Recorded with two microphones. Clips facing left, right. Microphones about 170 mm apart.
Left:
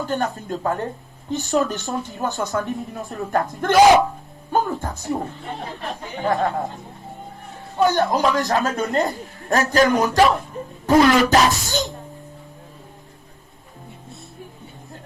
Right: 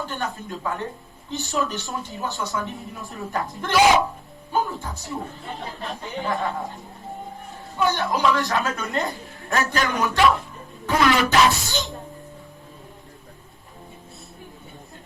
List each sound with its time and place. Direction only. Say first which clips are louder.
0.0 s speech: left 6 dB; 45° left (ahead or behind)
4.8 s music: left 7 dB; 50° left (ahead or behind)
6.1 s speech: left 5 dB; 45° left (ahead or behind)
7.8 s a man's voice: left 4 dB; 45° left (ahead or behind)